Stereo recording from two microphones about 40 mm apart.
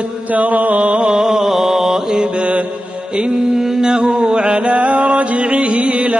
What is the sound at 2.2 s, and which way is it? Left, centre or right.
Mantra, right.